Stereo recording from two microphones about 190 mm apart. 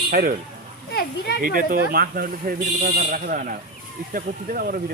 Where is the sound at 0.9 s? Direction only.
55° left (ahead or behind).